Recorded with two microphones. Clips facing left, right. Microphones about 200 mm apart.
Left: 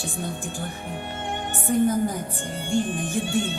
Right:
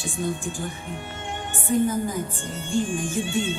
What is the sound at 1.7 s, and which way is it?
A woman's voice, 50° left (ahead or behind).